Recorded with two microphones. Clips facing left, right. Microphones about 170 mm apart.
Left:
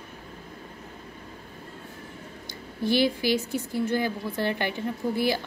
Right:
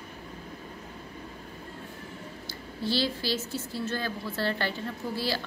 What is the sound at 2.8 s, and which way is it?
A woman's voice, 15° left (ahead or behind).